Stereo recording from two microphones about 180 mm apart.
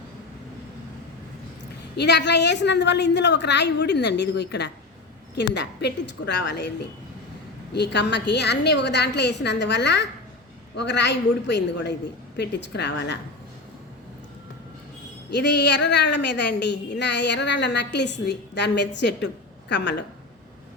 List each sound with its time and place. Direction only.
2.0 s speech: 70° left (ahead or behind)
15.3 s a woman's voice: 70° left (ahead or behind)